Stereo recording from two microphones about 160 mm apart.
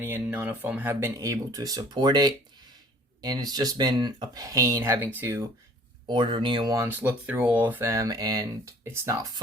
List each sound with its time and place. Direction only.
0.0 s speech: 10° right (ahead or behind)
6.1 s speech: 30° right (ahead or behind)
6.8 s speech: 10° right (ahead or behind)